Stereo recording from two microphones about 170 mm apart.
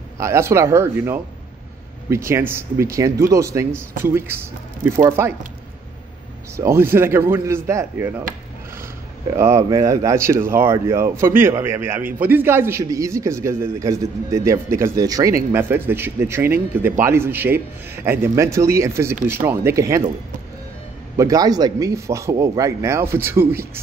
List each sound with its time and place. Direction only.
0.2 s a man's voice: 15° right (ahead or behind)
6.5 s a man's voice: 15° right (ahead or behind)
9.4 s a man's voice: 15° right (ahead or behind)
21.2 s a man's voice: 20° right (ahead or behind)